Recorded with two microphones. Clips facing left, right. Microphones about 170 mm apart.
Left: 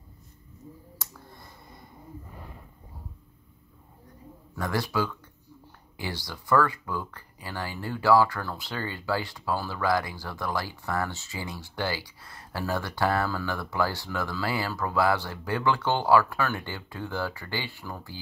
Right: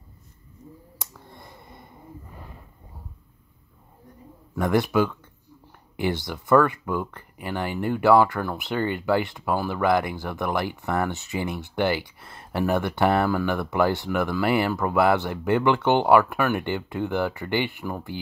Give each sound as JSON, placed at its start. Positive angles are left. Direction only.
{"t": 1.3, "sound": "finger snapping", "side_deg": -20}
{"t": 4.6, "sound": "speech", "side_deg": -20}